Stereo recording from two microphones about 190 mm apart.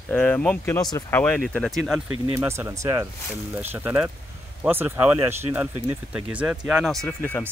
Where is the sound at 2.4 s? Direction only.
15° right (ahead or behind).